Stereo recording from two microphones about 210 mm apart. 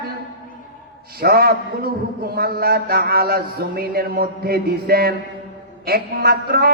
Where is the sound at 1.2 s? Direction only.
45° right (ahead or behind).